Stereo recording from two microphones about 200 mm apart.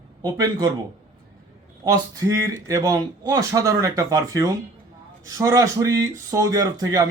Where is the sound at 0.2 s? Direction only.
20° right (ahead or behind).